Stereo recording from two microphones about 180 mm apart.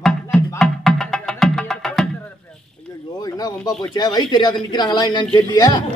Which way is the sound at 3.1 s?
20° left (ahead or behind).